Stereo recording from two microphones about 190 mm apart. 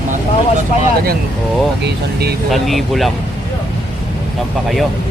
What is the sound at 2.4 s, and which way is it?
Speech, centre (ahead or behind).